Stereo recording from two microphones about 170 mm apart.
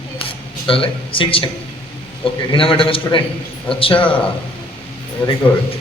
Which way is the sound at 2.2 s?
30° left (ahead or behind).